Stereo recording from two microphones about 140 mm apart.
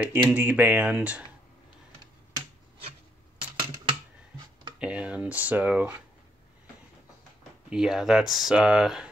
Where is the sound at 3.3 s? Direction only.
35° right (ahead or behind).